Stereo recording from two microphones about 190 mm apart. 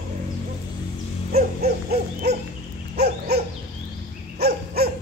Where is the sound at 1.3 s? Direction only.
55° right (ahead or behind).